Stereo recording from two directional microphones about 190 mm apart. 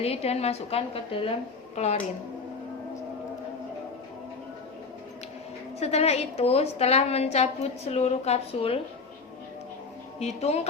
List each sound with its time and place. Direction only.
0.0 s a woman's voice: 30° left (ahead or behind)
5.8 s a woman's voice: 35° left (ahead or behind)
10.2 s a woman's voice: 35° left (ahead or behind)